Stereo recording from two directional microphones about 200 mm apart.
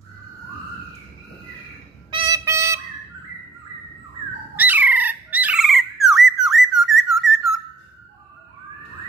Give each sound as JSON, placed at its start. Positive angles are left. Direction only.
{"t": 2.0, "sound": "music", "side_deg": -20}
{"t": 4.6, "sound": "squawk", "side_deg": -10}